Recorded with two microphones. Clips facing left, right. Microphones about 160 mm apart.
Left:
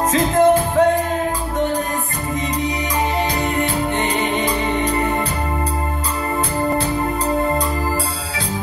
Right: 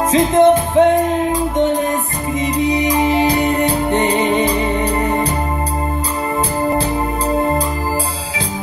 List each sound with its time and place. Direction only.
0.1 s music: 25° right (ahead or behind)
3.3 s music: 30° right (ahead or behind)